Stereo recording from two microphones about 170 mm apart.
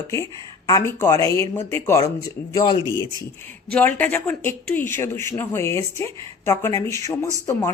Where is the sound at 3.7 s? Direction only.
10° left (ahead or behind).